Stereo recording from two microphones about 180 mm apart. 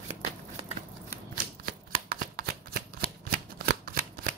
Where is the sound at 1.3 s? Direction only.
50° right (ahead or behind).